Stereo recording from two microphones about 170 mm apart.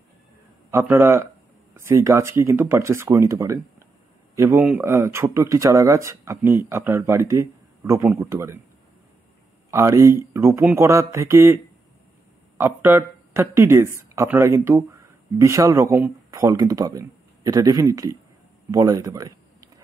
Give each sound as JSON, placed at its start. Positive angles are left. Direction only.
{"t": 0.7, "sound": "speech", "side_deg": -15}
{"t": 9.7, "sound": "speech", "side_deg": -15}